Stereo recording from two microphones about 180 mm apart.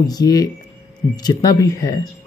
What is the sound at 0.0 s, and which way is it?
Speech, 20° left (ahead or behind).